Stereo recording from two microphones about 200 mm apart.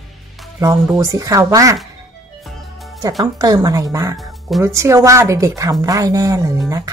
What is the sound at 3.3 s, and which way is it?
Speech, 20° right (ahead or behind).